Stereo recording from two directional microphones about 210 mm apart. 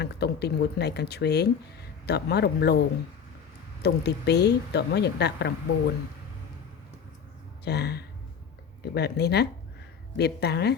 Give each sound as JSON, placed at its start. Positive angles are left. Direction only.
{"t": 0.0, "sound": "a woman's voice", "side_deg": 50}
{"t": 3.8, "sound": "a woman's voice", "side_deg": 50}
{"t": 7.6, "sound": "a woman's voice", "side_deg": 50}